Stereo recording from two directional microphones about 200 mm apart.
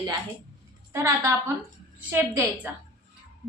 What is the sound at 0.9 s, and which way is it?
A woman's voice, 10° right (ahead or behind).